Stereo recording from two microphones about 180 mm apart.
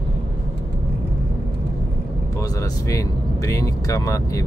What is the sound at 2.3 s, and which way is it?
Speech, 20° left (ahead or behind).